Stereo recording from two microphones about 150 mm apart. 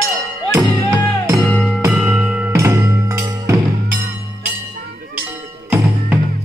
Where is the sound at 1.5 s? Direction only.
5° left (ahead or behind).